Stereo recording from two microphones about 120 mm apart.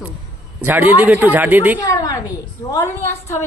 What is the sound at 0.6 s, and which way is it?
A man's voice, 15° right (ahead or behind).